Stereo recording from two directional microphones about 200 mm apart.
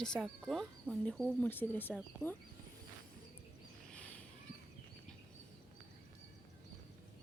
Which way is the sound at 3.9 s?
5° left (ahead or behind).